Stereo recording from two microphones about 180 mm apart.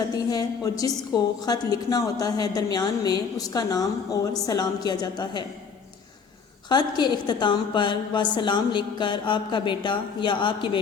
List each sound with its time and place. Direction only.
0.3 s a woman's voice: 20° left (ahead or behind)
6.7 s a woman's voice: 25° left (ahead or behind)